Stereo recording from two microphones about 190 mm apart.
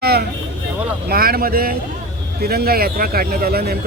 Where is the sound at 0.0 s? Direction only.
55° right (ahead or behind).